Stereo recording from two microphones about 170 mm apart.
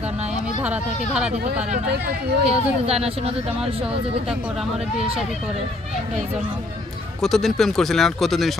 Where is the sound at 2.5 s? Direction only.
35° right (ahead or behind).